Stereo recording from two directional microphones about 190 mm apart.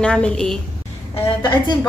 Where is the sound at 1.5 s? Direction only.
25° left (ahead or behind).